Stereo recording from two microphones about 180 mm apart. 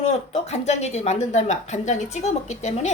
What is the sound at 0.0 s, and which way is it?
Speech, 35° left (ahead or behind).